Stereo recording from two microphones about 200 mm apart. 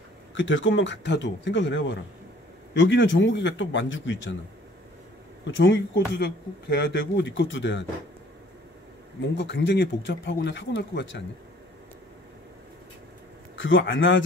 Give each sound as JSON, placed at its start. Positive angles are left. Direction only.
{"t": 0.3, "sound": "a man's voice", "side_deg": 70}
{"t": 5.5, "sound": "speech", "side_deg": 65}
{"t": 9.2, "sound": "speech", "side_deg": 60}
{"t": 13.6, "sound": "a man's voice", "side_deg": 70}